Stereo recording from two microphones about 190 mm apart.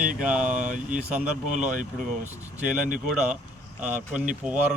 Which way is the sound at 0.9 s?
5° right (ahead or behind).